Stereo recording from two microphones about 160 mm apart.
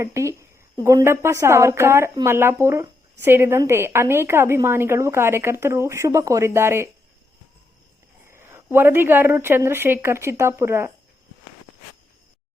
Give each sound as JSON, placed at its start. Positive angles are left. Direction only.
{"t": 0.0, "sound": "a woman's voice", "side_deg": -20}
{"t": 8.3, "sound": "a woman's voice", "side_deg": -15}